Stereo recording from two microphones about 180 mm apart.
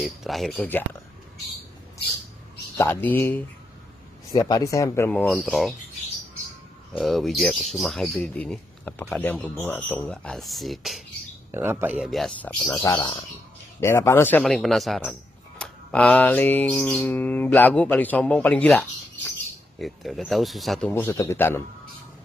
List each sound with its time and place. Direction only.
0.0 s speech: centre (ahead or behind)
2.8 s mantra: 10° left (ahead or behind)
7.0 s speech: centre (ahead or behind)
11.5 s speech: 10° right (ahead or behind); by 12.5 s 5° left (ahead or behind)
12.6 s mantra: 15° left (ahead or behind)
19.8 s speech: centre (ahead or behind)
20.9 s mantra: 10° left (ahead or behind)